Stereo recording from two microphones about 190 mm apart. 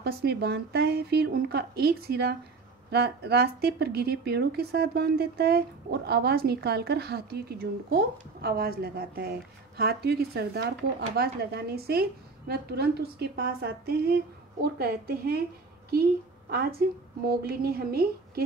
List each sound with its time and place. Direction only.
0.0 s a woman's voice: 60° right (ahead or behind)